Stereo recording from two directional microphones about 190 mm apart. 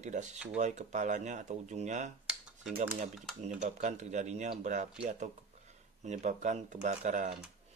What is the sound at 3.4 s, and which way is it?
Speech, 35° right (ahead or behind).